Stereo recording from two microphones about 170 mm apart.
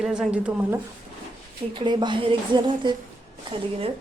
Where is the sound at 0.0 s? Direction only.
5° right (ahead or behind).